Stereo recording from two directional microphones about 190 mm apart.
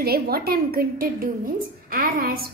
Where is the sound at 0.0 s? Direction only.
55° right (ahead or behind).